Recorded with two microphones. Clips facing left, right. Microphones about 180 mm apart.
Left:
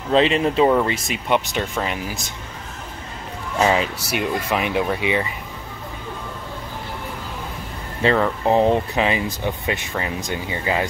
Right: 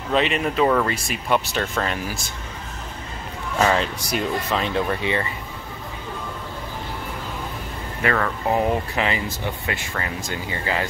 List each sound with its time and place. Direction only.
0.1 s speech: 30° left (ahead or behind)
3.5 s speech: 15° left (ahead or behind)
8.0 s speech: 25° left (ahead or behind)